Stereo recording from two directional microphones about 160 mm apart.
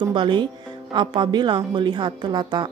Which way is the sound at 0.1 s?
30° right (ahead or behind).